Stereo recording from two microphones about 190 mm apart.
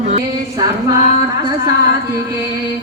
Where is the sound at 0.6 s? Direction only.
20° right (ahead or behind).